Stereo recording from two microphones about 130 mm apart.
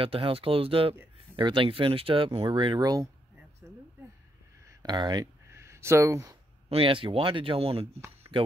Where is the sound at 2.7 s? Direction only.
25° right (ahead or behind).